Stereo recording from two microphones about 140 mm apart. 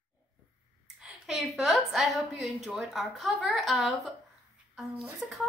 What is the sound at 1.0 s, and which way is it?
A woman's voice, centre (ahead or behind).